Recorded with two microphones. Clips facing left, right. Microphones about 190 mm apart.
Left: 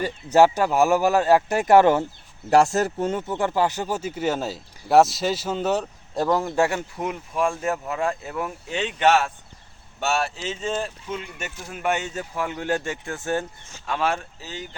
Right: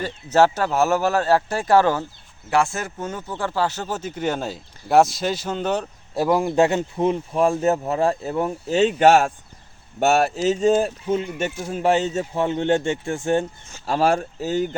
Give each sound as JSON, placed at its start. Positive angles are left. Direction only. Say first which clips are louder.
{"t": 0.0, "sound": "speech", "louder": "left 1 dB", "side_deg": 10}
{"t": 2.5, "sound": "speech", "louder": "left 4 dB", "side_deg": 40}
{"t": 6.1, "sound": "speech", "louder": "right 3 dB", "side_deg": -10}
{"t": 13.8, "sound": "speech", "louder": "right 6 dB", "side_deg": -40}